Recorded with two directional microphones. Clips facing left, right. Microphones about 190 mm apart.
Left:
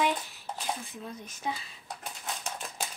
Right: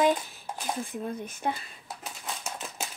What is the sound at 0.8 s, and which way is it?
Speech, 50° right (ahead or behind).